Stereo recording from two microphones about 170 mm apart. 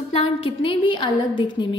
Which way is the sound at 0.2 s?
30° left (ahead or behind).